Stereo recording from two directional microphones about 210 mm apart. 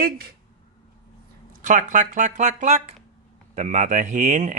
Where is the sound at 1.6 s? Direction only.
40° right (ahead or behind).